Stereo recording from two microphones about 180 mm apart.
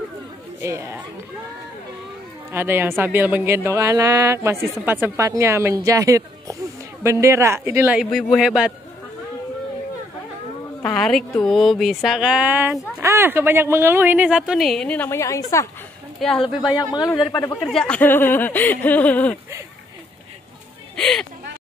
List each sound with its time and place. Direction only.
0.6 s speech: 15° right (ahead or behind)
2.5 s speech: 10° right (ahead or behind)
10.8 s speech: 5° left (ahead or behind)
16.2 s speech: centre (ahead or behind)
16.7 s speech: 20° left (ahead or behind)
17.1 s speech: 5° left (ahead or behind)
20.9 s speech: 5° left (ahead or behind)